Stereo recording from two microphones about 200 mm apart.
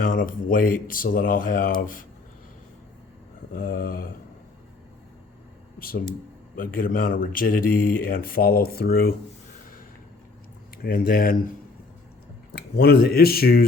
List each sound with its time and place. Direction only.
0.0 s speech: 45° left (ahead or behind)
3.5 s speech: 45° left (ahead or behind)
6.6 s speech: 45° left (ahead or behind)
10.8 s speech: 45° left (ahead or behind)
12.5 s speech: 55° left (ahead or behind)